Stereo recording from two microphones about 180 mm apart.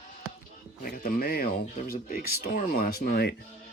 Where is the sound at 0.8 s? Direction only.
55° left (ahead or behind).